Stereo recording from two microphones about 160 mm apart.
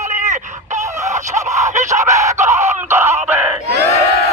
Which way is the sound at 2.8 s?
15° right (ahead or behind).